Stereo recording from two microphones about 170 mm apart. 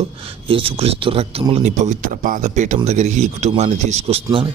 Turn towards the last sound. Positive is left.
turn(degrees=-35)  # may be behind; listen again after turning